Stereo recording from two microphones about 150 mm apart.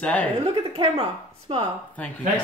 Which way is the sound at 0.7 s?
40° right (ahead or behind).